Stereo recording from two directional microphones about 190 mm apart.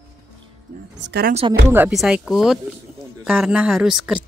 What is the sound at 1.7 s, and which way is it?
Speech, 5° right (ahead or behind).